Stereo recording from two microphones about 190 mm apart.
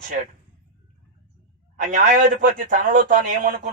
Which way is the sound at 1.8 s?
40° right (ahead or behind).